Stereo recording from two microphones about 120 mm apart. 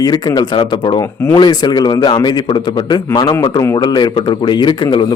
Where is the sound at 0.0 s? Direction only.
35° left (ahead or behind).